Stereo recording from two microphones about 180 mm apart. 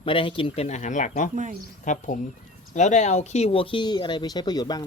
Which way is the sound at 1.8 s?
45° left (ahead or behind).